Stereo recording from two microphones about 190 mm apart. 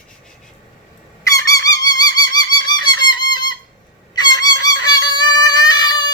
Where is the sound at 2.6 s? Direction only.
20° left (ahead or behind).